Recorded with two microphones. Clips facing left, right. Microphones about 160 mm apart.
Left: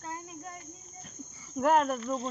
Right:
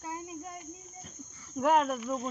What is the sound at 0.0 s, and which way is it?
Cricket, 15° right (ahead or behind).